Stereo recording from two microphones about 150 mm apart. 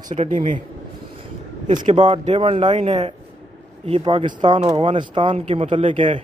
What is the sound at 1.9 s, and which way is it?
Speech, 35° right (ahead or behind).